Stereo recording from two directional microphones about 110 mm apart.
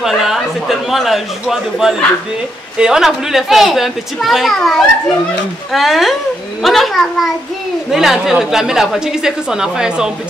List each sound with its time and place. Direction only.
0.0 s a woman's voice: 5° right (ahead or behind)